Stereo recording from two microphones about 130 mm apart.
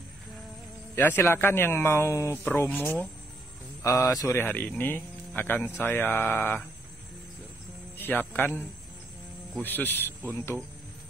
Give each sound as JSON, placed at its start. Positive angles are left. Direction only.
{"t": 0.9, "sound": "speech", "side_deg": 15}
{"t": 8.0, "sound": "speech", "side_deg": 15}
{"t": 9.6, "sound": "speech", "side_deg": 15}